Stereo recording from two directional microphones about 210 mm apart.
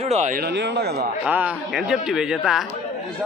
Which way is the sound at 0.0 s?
30° right (ahead or behind).